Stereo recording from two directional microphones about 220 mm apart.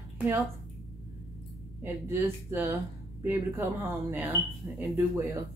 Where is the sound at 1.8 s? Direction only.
10° right (ahead or behind).